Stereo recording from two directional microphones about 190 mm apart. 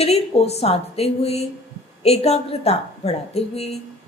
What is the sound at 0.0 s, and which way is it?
A woman's voice, 35° left (ahead or behind).